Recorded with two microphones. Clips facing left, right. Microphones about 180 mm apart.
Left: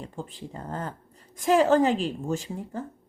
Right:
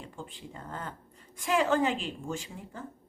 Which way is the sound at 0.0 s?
40° left (ahead or behind).